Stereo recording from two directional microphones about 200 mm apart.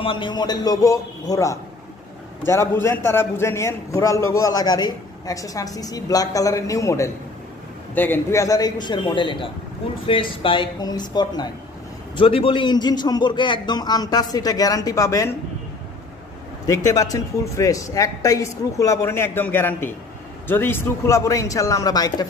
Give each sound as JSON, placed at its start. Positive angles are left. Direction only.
{"t": 0.0, "sound": "a man's voice", "side_deg": 25}
{"t": 16.6, "sound": "a man's voice", "side_deg": 15}